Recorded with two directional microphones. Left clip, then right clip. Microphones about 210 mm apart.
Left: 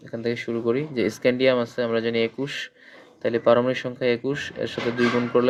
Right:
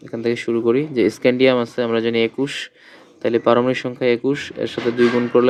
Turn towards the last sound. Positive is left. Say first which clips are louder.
# right 5 dB
turn(degrees=-20)  # may be behind; listen again after turning